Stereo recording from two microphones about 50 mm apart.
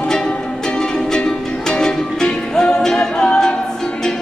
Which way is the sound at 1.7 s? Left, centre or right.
Centre.